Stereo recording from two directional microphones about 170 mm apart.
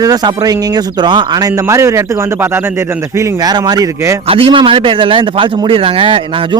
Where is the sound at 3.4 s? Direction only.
25° right (ahead or behind).